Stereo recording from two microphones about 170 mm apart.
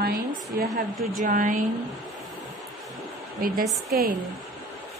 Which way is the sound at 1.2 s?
50° right (ahead or behind).